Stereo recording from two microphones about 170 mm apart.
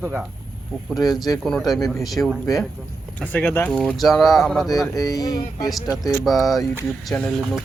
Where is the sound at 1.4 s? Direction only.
Centre (ahead or behind).